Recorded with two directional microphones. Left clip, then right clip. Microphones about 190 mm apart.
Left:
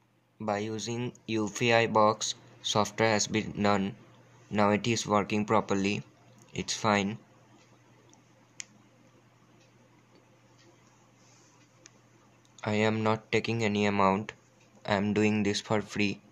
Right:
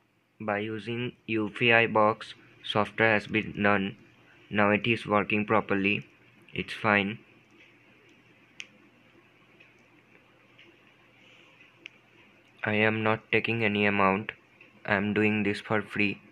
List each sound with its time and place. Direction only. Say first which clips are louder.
0.4 s speech: right 1 dB; 15° left (ahead or behind)
8.6 s tick-tock: right 2 dB; 25° left (ahead or behind)
12.5 s speech: right 3 dB; 10° left (ahead or behind)